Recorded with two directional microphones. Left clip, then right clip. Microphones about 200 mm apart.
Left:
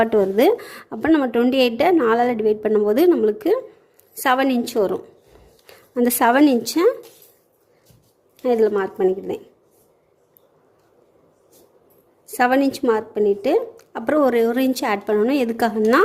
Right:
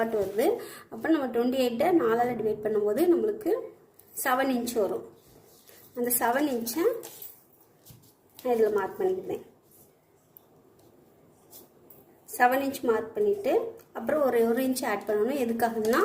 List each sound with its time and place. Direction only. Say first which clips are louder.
0.0 s a woman's voice: left 10 dB; 45° left (ahead or behind)
5.9 s a woman's voice: left 10 dB; 50° left (ahead or behind)
8.4 s a woman's voice: left 7 dB; 55° left (ahead or behind)
12.4 s a woman's voice: left 6 dB; 55° left (ahead or behind)